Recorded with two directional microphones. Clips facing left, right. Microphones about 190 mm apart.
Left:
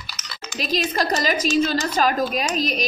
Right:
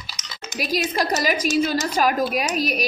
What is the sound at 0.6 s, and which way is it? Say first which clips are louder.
Speech: even; 10° right (ahead or behind).